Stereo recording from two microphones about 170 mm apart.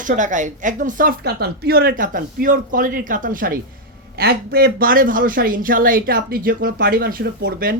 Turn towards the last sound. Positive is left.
turn(degrees=-60)  # may be behind; listen again after turning